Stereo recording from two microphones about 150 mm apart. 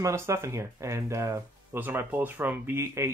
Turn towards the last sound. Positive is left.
turn(degrees=-20)  # may be behind; listen again after turning